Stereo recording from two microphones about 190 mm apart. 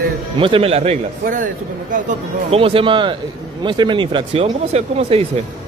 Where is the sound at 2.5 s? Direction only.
30° right (ahead or behind).